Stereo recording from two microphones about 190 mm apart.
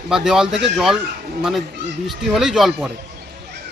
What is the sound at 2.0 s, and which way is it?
Speech, centre (ahead or behind).